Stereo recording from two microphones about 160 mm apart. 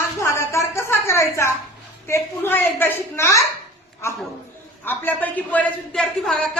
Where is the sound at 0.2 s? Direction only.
20° left (ahead or behind).